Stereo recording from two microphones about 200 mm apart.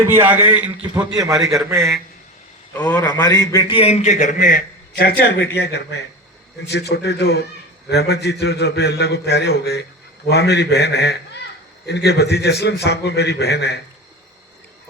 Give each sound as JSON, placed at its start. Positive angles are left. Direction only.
{"t": 0.0, "sound": "a man's voice", "side_deg": -10}
{"t": 2.8, "sound": "a man's voice", "side_deg": 15}